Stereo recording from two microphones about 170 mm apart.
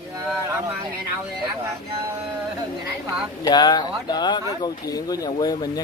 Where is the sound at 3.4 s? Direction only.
25° left (ahead or behind).